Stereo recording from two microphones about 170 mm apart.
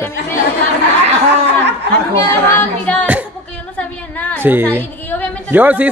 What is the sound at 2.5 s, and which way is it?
Music, 10° left (ahead or behind).